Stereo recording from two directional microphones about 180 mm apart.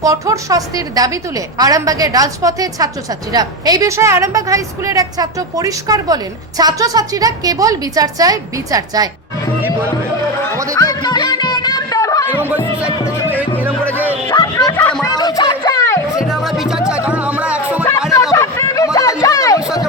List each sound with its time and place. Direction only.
0.0 s a woman's voice: 20° right (ahead or behind)
10.8 s music: 20° left (ahead or behind)
12.5 s music: 10° right (ahead or behind)
14.3 s music: 20° left (ahead or behind)
16.2 s music: centre (ahead or behind)
18.3 s a sound: 20° left (ahead or behind)
19.2 s music: 20° left (ahead or behind)